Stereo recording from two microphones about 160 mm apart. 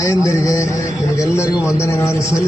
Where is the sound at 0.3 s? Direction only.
20° left (ahead or behind).